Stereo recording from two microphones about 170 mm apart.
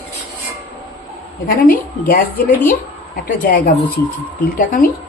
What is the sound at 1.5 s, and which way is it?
Speech, 60° left (ahead or behind).